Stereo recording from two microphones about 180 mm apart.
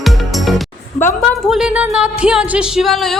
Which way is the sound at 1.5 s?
5° right (ahead or behind).